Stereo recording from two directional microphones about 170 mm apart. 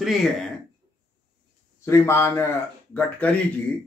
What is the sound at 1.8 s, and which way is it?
Speech, 15° left (ahead or behind).